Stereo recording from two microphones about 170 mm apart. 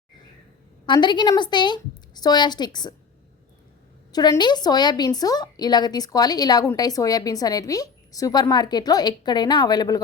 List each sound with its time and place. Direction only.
0.9 s a woman's voice: 25° left (ahead or behind)
4.1 s a woman's voice: 25° left (ahead or behind)